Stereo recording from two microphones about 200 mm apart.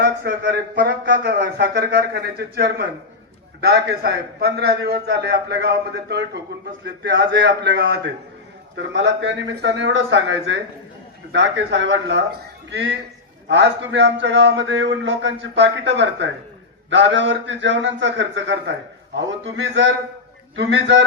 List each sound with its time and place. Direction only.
0.0 s speech: 60° right (ahead or behind)